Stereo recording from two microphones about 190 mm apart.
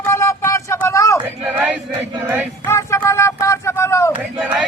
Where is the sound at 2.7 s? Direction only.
15° left (ahead or behind).